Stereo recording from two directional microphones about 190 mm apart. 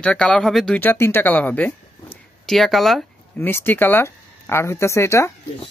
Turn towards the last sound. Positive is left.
turn(degrees=15)  # may be behind; listen again after turning